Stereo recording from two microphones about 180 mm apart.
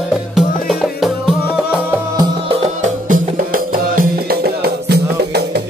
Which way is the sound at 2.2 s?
30° right (ahead or behind).